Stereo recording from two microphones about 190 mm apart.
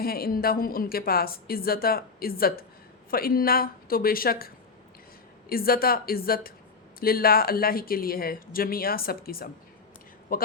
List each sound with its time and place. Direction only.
0.0 s a woman's voice: 55° left (ahead or behind)